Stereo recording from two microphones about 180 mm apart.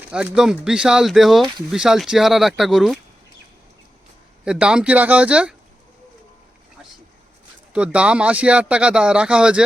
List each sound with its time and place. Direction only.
0.1 s speech: 5° right (ahead or behind)
4.4 s speech: 5° right (ahead or behind)
7.7 s speech: 5° right (ahead or behind)